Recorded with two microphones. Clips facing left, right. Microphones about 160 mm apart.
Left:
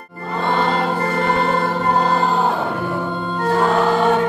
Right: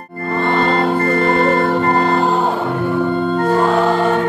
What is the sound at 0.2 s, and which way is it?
Organ, 60° right (ahead or behind).